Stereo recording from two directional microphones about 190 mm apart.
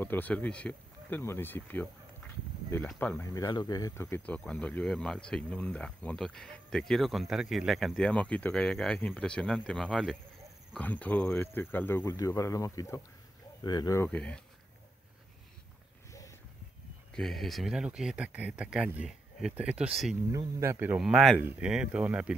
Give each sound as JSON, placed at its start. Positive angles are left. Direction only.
{"t": 0.0, "sound": "speech", "side_deg": 10}
{"t": 16.1, "sound": "a sound", "side_deg": 15}
{"t": 17.1, "sound": "speech", "side_deg": 0}